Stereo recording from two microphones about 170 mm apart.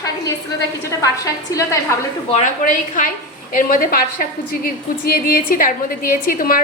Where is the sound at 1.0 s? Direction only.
20° left (ahead or behind).